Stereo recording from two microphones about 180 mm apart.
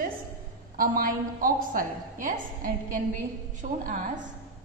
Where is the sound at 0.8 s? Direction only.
50° right (ahead or behind).